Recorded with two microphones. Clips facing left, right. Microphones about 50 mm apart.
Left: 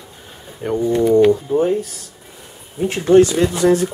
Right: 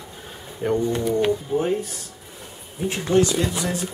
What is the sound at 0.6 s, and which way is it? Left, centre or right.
Speech, centre.